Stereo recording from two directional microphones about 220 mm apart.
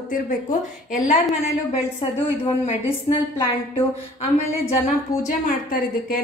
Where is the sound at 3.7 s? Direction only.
30° left (ahead or behind).